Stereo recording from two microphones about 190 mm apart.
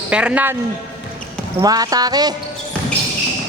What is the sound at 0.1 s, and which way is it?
Speech, 5° right (ahead or behind).